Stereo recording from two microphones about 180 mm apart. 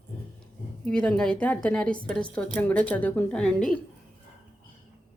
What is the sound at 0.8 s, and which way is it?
A woman's voice, 5° left (ahead or behind).